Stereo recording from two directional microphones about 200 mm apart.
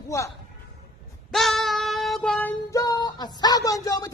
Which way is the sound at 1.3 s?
Centre (ahead or behind).